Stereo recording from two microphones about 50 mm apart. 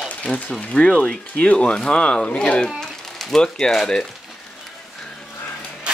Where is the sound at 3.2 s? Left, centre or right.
Centre.